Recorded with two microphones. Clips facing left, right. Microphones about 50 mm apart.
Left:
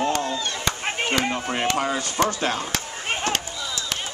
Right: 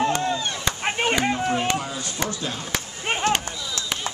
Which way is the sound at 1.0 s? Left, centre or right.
Centre.